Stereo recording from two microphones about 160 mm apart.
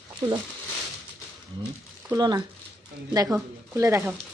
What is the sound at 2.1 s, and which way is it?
A woman's voice, 25° right (ahead or behind).